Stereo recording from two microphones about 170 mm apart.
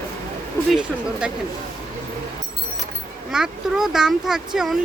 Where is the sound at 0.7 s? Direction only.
5° right (ahead or behind).